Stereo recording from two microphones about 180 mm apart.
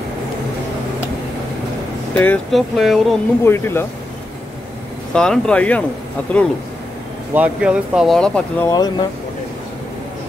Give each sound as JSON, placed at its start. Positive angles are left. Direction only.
{"t": 2.1, "sound": "speech", "side_deg": 10}
{"t": 3.4, "sound": "speech", "side_deg": 15}
{"t": 5.1, "sound": "speech", "side_deg": 5}
{"t": 7.3, "sound": "speech", "side_deg": -5}
{"t": 8.6, "sound": "speech", "side_deg": 20}